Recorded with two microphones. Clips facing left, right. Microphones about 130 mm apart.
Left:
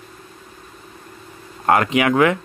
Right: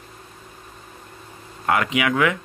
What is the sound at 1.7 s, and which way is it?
Speech, 40° left (ahead or behind).